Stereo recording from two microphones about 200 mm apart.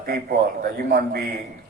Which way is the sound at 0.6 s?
50° right (ahead or behind).